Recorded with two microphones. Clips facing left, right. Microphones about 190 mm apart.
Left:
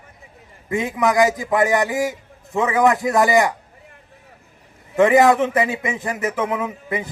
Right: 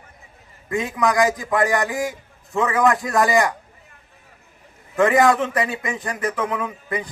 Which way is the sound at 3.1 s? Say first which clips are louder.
Left 2 dB; centre (ahead or behind).